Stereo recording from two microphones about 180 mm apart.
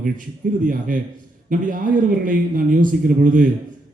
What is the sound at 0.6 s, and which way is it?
A man's voice, 50° right (ahead or behind).